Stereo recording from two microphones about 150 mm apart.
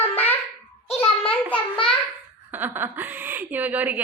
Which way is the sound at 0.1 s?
10° left (ahead or behind).